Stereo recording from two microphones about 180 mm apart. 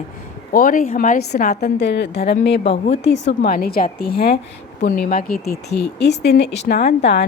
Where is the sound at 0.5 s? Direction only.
50° left (ahead or behind); by 2.7 s 65° left (ahead or behind).